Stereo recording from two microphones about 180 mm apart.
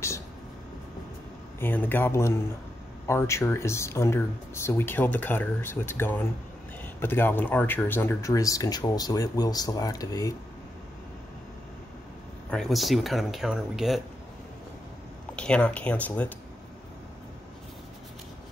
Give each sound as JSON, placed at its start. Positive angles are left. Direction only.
{"t": 1.6, "sound": "speech", "side_deg": 10}
{"t": 12.4, "sound": "speech", "side_deg": 5}
{"t": 15.3, "sound": "speech", "side_deg": 5}